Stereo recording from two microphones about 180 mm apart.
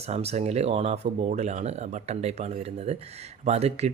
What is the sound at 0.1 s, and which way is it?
Speech, 35° right (ahead or behind).